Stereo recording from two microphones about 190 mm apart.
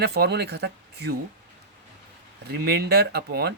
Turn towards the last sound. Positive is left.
turn(degrees=-60)  # may be behind; listen again after turning